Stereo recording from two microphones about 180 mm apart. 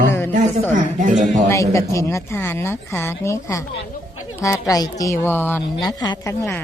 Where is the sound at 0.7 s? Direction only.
45° right (ahead or behind).